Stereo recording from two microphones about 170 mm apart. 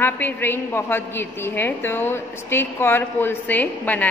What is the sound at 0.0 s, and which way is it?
A woman's voice, 10° left (ahead or behind).